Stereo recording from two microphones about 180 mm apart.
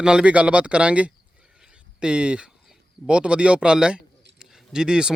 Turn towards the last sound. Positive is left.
turn(degrees=-5)  # may be behind; listen again after turning